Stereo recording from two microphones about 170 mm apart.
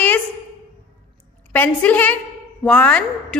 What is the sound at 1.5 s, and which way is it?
A woman's voice, 10° left (ahead or behind).